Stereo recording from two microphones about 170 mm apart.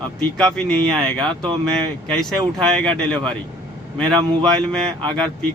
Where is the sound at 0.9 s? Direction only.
30° right (ahead or behind).